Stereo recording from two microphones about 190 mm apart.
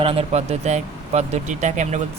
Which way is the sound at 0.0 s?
30° right (ahead or behind).